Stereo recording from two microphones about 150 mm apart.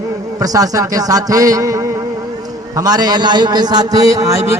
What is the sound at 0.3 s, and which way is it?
A man's voice, 25° right (ahead or behind).